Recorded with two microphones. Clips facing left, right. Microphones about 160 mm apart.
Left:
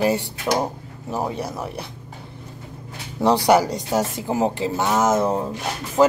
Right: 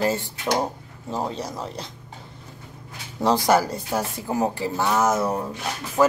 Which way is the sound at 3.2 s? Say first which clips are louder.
Left 3 dB; centre (ahead or behind).